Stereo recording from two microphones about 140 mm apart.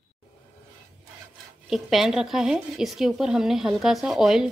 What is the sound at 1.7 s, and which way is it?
A woman's voice, centre (ahead or behind).